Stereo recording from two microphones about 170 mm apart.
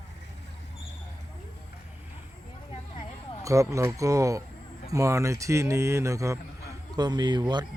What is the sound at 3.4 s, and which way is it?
A man's voice, 20° right (ahead or behind).